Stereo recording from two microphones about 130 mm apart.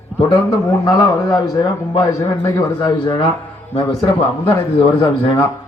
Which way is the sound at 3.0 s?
40° left (ahead or behind).